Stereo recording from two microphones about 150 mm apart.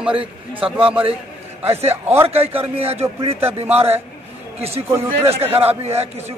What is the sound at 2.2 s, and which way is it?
A man's voice, 40° right (ahead or behind).